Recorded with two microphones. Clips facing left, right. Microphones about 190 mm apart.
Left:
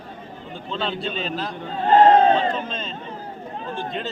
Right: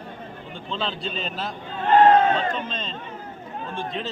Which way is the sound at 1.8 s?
35° left (ahead or behind).